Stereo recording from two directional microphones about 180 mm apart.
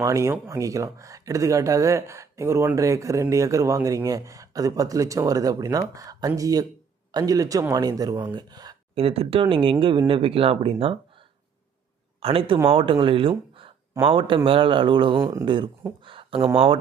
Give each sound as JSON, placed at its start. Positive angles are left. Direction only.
{"t": 0.0, "sound": "speech", "side_deg": -15}
{"t": 12.2, "sound": "speech", "side_deg": -30}
{"t": 15.2, "sound": "speech", "side_deg": -15}
{"t": 15.4, "sound": "speech", "side_deg": -25}
{"t": 16.0, "sound": "a sound", "side_deg": -30}